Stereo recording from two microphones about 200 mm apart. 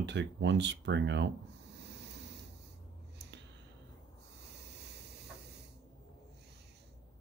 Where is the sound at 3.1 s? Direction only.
60° right (ahead or behind).